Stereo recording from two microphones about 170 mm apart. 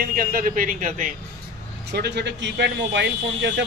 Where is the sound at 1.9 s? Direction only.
75° right (ahead or behind).